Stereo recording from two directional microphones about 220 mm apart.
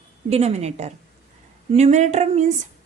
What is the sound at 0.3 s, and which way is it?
A woman's voice, 30° right (ahead or behind).